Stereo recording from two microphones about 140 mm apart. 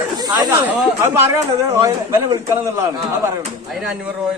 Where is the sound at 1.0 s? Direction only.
15° right (ahead or behind).